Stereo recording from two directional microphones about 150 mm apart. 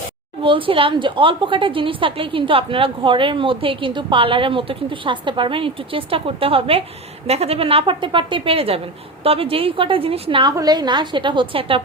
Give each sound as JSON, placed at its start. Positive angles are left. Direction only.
{"t": 0.4, "sound": "a woman's voice", "side_deg": -35}
{"t": 10.5, "sound": "a woman's voice", "side_deg": -25}